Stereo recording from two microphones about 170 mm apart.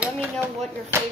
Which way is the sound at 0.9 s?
15° right (ahead or behind).